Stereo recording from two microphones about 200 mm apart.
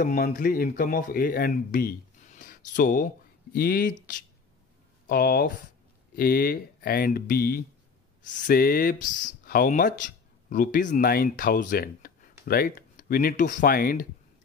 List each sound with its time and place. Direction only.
0.0 s speech: 45° left (ahead or behind)